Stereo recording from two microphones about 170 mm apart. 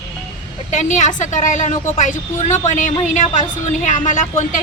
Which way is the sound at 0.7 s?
45° left (ahead or behind).